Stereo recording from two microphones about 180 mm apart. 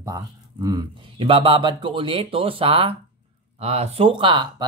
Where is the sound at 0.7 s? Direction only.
30° right (ahead or behind).